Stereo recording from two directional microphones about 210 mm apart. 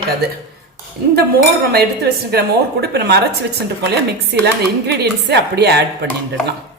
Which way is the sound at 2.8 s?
50° right (ahead or behind).